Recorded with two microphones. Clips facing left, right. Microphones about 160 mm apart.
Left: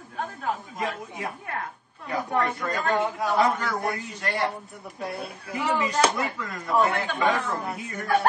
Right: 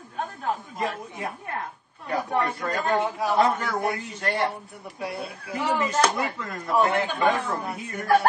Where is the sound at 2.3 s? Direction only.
25° right (ahead or behind).